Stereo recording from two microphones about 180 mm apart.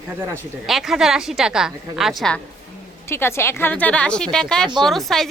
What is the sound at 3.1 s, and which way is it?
A woman's voice, 15° left (ahead or behind).